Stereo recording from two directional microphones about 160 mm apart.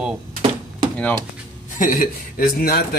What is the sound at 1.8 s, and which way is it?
A man's voice, 60° left (ahead or behind).